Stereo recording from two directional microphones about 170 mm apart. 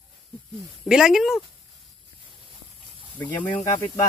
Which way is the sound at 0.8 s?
5° right (ahead or behind).